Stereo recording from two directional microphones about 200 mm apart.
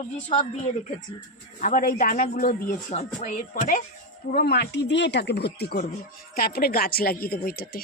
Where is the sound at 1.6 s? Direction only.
40° left (ahead or behind).